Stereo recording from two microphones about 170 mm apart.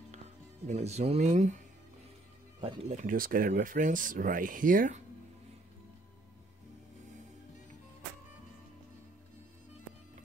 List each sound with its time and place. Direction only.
0.7 s speech: 40° right (ahead or behind)
2.6 s speech: 35° right (ahead or behind); by 5.0 s 50° right (ahead or behind)